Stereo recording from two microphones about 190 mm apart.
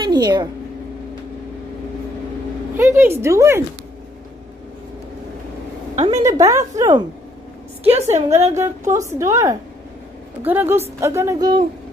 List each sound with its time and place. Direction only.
0.1 s a woman's voice: 20° right (ahead or behind)
2.8 s a woman's voice: 15° right (ahead or behind)
6.1 s a woman's voice: 15° right (ahead or behind)
7.9 s a woman's voice: 35° right (ahead or behind)
8.6 s a woman's voice: 15° right (ahead or behind)